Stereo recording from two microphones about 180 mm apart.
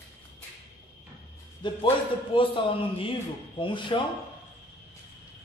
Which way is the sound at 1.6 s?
25° left (ahead or behind).